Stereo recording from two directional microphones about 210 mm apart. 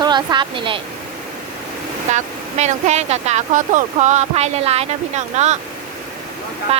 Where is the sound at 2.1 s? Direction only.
35° right (ahead or behind).